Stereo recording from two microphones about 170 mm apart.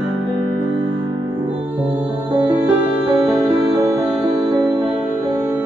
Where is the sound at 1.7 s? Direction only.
10° right (ahead or behind).